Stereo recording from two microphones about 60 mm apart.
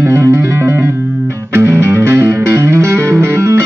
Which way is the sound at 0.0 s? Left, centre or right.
Right.